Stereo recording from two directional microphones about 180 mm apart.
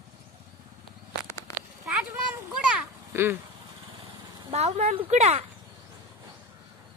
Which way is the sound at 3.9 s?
25° right (ahead or behind).